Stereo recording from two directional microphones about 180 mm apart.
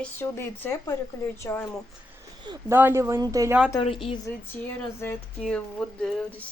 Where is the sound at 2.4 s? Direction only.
25° right (ahead or behind).